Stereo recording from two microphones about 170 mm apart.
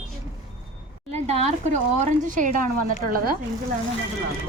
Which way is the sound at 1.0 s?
40° right (ahead or behind).